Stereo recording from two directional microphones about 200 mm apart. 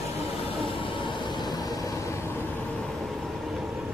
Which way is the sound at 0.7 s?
25° left (ahead or behind).